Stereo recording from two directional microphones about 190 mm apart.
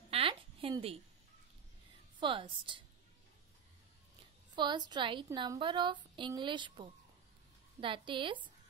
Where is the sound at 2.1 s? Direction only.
25° right (ahead or behind).